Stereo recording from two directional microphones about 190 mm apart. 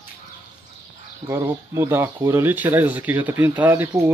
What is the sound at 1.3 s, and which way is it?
Speech, 15° right (ahead or behind).